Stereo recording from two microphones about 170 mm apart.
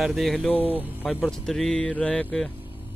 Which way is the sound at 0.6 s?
10° right (ahead or behind).